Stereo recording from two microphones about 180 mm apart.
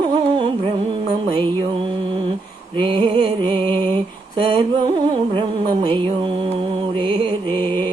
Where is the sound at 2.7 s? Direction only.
30° right (ahead or behind).